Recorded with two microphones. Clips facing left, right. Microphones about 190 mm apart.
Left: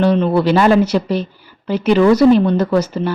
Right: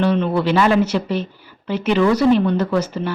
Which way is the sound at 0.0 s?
35° left (ahead or behind).